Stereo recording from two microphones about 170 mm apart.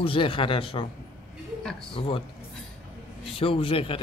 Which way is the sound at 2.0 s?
30° left (ahead or behind).